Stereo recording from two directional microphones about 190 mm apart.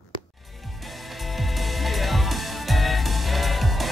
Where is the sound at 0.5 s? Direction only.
Centre (ahead or behind).